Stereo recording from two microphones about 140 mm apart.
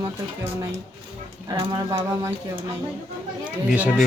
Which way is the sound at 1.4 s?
25° right (ahead or behind).